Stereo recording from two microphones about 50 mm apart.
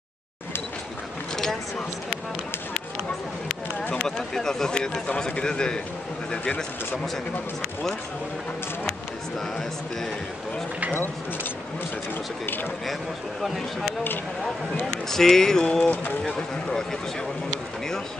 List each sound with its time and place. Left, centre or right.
1.3 s a sound: centre
3.9 s speech: centre
6.3 s speech: left
15.0 s speech: centre
15.8 s speech: left
16.3 s speech: centre